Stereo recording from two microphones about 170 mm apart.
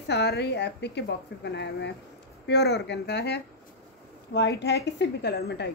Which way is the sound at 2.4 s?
80° left.